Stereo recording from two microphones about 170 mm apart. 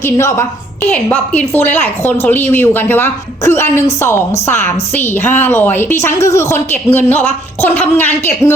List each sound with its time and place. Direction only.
0.0 s a woman's voice: 15° left (ahead or behind)